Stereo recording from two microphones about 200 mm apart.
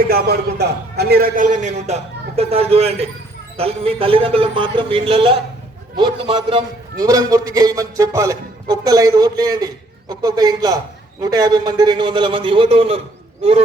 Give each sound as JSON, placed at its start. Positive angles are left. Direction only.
{"t": 0.1, "sound": "a man's voice", "side_deg": -50}